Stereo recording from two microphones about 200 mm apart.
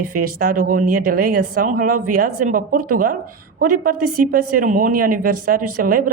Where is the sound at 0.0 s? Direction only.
45° right (ahead or behind).